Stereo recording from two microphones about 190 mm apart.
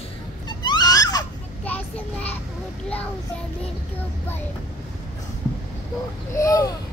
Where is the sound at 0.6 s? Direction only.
20° left (ahead or behind).